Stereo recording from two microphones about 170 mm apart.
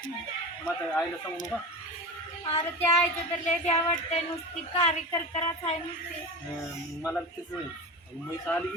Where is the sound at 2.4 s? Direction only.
35° left (ahead or behind).